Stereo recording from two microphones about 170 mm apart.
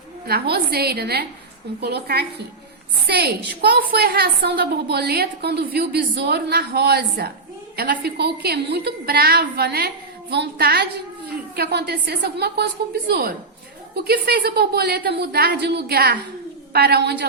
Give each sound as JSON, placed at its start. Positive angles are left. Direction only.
{"t": 0.3, "sound": "a woman's voice", "side_deg": -65}